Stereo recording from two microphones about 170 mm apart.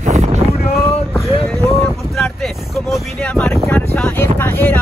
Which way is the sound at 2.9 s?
Centre (ahead or behind).